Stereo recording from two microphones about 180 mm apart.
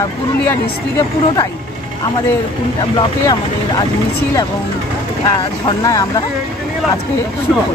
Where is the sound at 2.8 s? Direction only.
25° left (ahead or behind).